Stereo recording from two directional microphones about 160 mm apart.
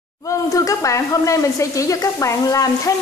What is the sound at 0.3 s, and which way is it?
Speech, 20° left (ahead or behind).